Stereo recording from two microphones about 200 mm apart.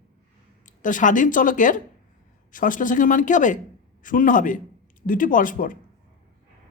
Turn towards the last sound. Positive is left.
turn(degrees=40)  # may be behind; listen again after turning